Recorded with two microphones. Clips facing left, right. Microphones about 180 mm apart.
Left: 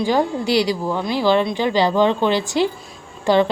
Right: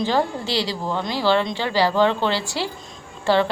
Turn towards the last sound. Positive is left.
turn(degrees=15)  # may be behind; listen again after turning